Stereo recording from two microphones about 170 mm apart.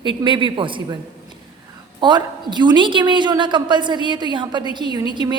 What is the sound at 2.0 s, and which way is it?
A woman's voice, 25° right (ahead or behind).